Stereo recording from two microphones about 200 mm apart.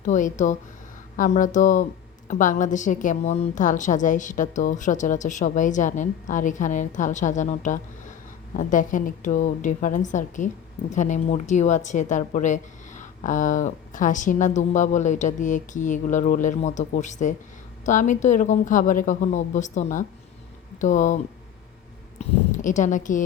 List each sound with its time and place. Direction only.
0.0 s a woman's voice: 40° left (ahead or behind)
22.2 s speech: 40° left (ahead or behind)